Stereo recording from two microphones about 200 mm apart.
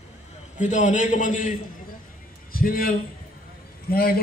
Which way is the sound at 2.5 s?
45° left (ahead or behind).